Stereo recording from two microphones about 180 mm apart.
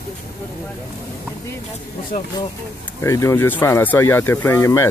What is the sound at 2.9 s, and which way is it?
Speech, 15° left (ahead or behind).